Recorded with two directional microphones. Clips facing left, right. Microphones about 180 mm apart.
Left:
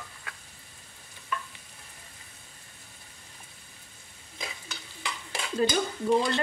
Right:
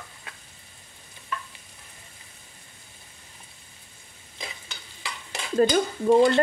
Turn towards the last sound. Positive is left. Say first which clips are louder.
# right 7 dB
turn(degrees=-50)  # may be behind; listen again after turning